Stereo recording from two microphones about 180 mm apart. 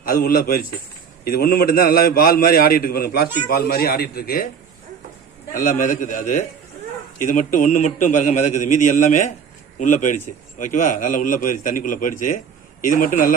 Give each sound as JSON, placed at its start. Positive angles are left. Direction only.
{"t": 0.0, "sound": "a man's voice", "side_deg": 55}
{"t": 5.5, "sound": "a man's voice", "side_deg": 45}